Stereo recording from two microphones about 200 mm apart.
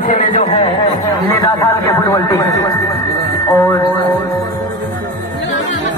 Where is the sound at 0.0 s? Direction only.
40° left (ahead or behind).